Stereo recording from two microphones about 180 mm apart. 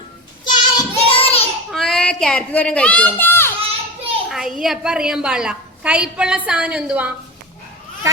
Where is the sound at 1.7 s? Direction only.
Centre (ahead or behind).